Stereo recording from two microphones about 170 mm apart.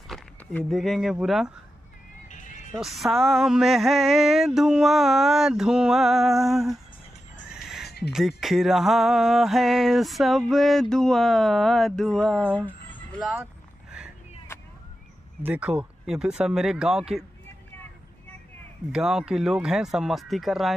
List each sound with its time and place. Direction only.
0.1 s a sound: 5° left (ahead or behind)
0.7 s music: centre (ahead or behind)
2.2 s music: 50° left (ahead or behind)
2.7 s music: centre (ahead or behind)
7.5 s crow: centre (ahead or behind)
8.1 s music: centre (ahead or behind)
13.2 s vehicle: 5° right (ahead or behind)
14.5 s a sound: 15° left (ahead or behind)
15.4 s music: 10° right (ahead or behind)
18.9 s music: 5° right (ahead or behind)